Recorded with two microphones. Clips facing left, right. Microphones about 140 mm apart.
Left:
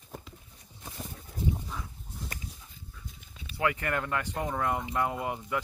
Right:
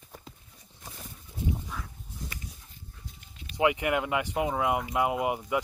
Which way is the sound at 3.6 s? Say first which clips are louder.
Right 4 dB; 15° right (ahead or behind).